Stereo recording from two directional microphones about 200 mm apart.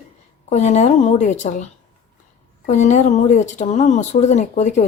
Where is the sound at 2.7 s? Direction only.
35° left (ahead or behind).